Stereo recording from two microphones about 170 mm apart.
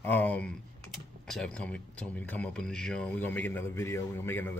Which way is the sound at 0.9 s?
Centre (ahead or behind).